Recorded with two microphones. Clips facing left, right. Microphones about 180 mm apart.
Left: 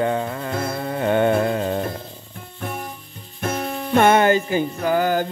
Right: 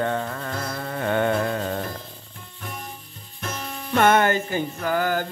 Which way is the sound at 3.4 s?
55° left (ahead or behind).